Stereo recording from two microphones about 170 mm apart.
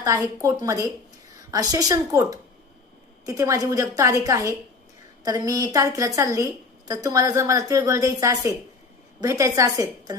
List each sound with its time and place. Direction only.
0.0 s a woman's voice: 20° right (ahead or behind)